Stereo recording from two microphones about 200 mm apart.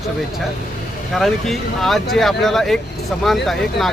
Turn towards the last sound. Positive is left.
turn(degrees=0)  # may be behind; listen again after turning